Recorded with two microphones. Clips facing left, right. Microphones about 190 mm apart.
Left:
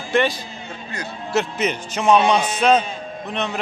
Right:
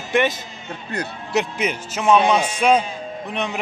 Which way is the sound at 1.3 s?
15° right (ahead or behind).